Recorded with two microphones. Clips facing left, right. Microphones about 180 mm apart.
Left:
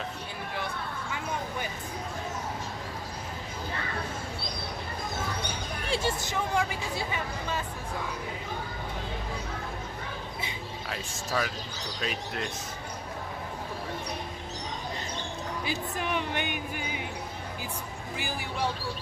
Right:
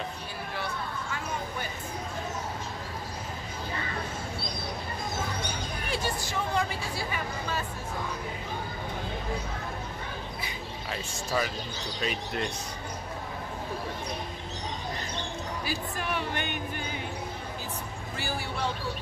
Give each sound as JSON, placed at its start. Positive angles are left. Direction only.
{"t": 5.9, "sound": "speech", "side_deg": 25}
{"t": 10.9, "sound": "speech", "side_deg": 0}
{"t": 15.6, "sound": "speech", "side_deg": 20}
{"t": 18.1, "sound": "speech", "side_deg": 15}